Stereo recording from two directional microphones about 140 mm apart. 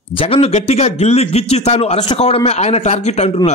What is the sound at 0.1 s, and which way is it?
A man's voice, 40° left (ahead or behind).